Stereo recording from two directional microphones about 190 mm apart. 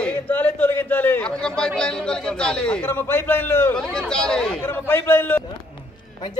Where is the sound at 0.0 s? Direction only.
10° left (ahead or behind).